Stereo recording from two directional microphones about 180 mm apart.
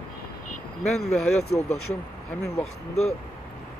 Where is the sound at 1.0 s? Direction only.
35° left (ahead or behind).